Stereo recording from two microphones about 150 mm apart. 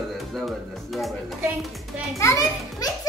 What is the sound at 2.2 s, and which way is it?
Speech, 20° left (ahead or behind).